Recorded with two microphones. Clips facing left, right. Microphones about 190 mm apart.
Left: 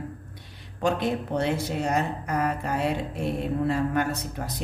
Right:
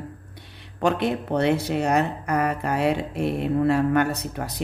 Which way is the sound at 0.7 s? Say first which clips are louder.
Right 2 dB; 65° right (ahead or behind).